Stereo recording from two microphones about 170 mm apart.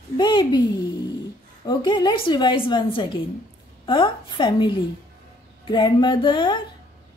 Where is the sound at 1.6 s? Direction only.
25° left (ahead or behind).